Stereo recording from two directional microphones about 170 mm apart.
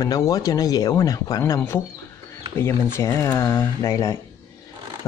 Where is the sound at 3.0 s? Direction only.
15° left (ahead or behind).